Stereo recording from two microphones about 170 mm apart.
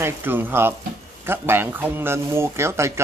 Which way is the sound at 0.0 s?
10° right (ahead or behind).